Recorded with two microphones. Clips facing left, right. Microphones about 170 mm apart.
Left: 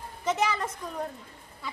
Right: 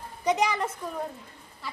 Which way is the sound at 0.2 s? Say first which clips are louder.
Right 2 dB; 15° right (ahead or behind).